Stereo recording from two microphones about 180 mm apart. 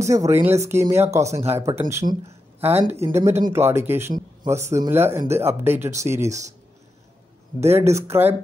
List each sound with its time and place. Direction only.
0.0 s speech: 15° right (ahead or behind)
7.6 s speech: 15° right (ahead or behind)